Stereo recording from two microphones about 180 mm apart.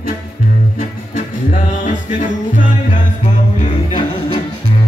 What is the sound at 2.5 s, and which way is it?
Music, 45° left (ahead or behind).